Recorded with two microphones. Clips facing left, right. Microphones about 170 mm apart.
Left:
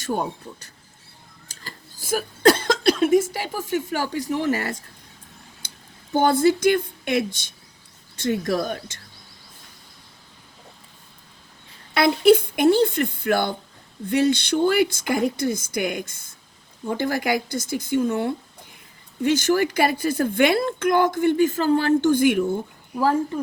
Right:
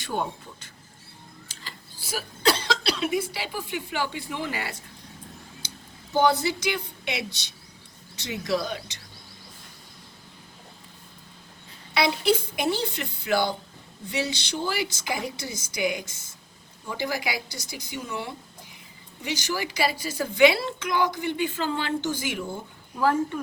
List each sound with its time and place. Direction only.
0.0 s speech: 40° left (ahead or behind)
6.1 s a woman's voice: 50° left (ahead or behind)
11.9 s a woman's voice: 55° left (ahead or behind)